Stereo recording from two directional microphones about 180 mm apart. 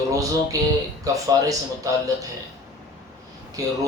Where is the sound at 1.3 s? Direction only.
20° right (ahead or behind).